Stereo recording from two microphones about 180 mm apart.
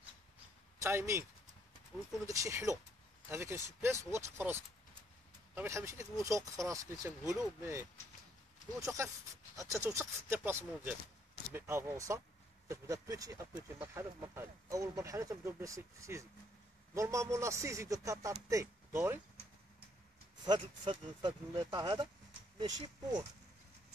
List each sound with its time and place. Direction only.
0.7 s speech: 15° right (ahead or behind)
2.2 s a man's voice: 20° right (ahead or behind)
8.7 s a man's voice: 15° right (ahead or behind)
13.6 s a man's voice: 5° right (ahead or behind)
14.2 s a man's voice: 20° right (ahead or behind)
20.4 s speech: 25° right (ahead or behind)